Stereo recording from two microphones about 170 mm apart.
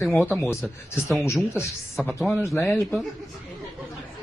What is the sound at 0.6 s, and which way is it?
Speech, centre (ahead or behind).